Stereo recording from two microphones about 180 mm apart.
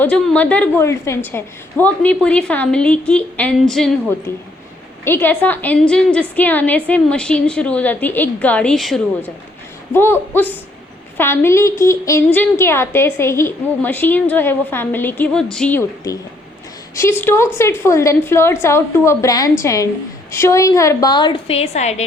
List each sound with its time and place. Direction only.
0.0 s a woman's voice: 5° left (ahead or behind)
9.9 s a woman's voice: 10° left (ahead or behind); by 22.0 s 40° left (ahead or behind)